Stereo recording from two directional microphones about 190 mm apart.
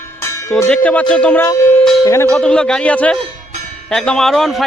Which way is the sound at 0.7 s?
5° left (ahead or behind).